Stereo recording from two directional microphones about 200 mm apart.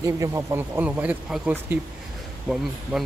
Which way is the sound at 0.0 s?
15° right (ahead or behind).